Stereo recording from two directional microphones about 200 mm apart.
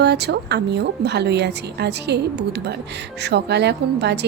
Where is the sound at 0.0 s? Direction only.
55° right (ahead or behind).